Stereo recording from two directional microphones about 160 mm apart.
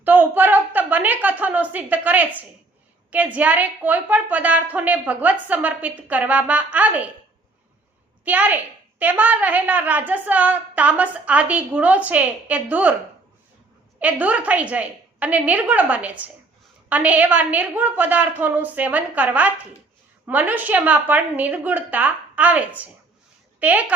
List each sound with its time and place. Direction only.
0.0 s a woman's voice: 10° right (ahead or behind)
8.2 s a woman's voice: 10° right (ahead or behind)
14.0 s a woman's voice: 10° right (ahead or behind)